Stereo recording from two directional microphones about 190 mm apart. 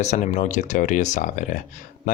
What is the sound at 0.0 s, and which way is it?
Speech, 40° left (ahead or behind).